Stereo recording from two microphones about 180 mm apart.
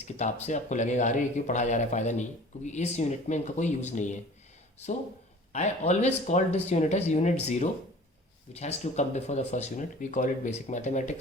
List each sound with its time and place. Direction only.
0.0 s speech: 40° left (ahead or behind)
5.5 s speech: 40° left (ahead or behind)